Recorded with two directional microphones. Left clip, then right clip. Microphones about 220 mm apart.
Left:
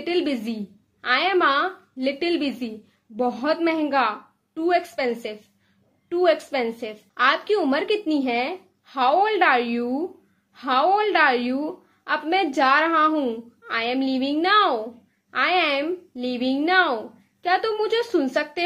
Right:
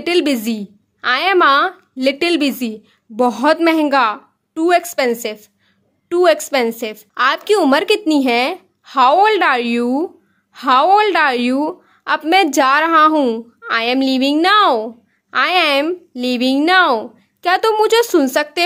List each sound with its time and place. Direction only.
0.0 s a woman's voice: 50° right (ahead or behind)